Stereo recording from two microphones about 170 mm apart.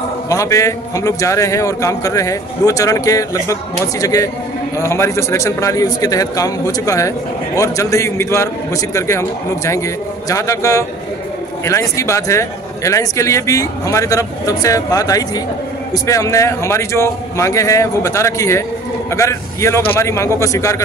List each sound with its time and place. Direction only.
0.3 s a man's voice: 20° left (ahead or behind)
10.2 s a man's voice: 20° left (ahead or behind)